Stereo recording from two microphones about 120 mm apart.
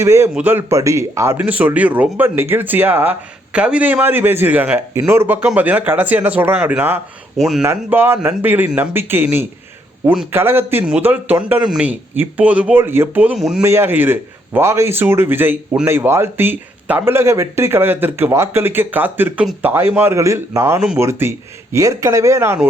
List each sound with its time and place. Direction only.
0.0 s speech: 20° right (ahead or behind)
7.3 s speech: 5° right (ahead or behind)
7.6 s speech: 20° right (ahead or behind)
11.6 s speech: 5° right (ahead or behind)
11.9 s speech: 15° right (ahead or behind)
13.3 s speech: 5° right (ahead or behind)
13.6 s speech: 20° right (ahead or behind)